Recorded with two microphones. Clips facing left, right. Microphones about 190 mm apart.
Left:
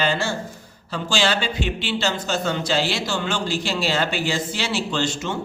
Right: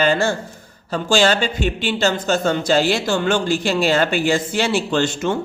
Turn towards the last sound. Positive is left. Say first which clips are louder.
# right 5 dB
turn(degrees=-55)  # may be behind; listen again after turning